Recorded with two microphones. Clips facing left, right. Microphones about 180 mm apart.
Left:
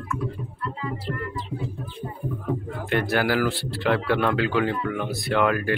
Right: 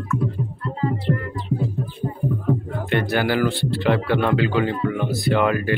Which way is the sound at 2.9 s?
Centre (ahead or behind).